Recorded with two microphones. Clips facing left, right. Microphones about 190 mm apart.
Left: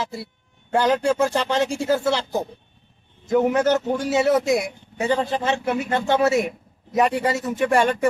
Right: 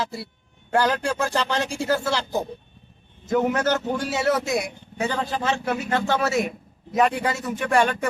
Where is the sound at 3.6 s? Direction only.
20° left (ahead or behind).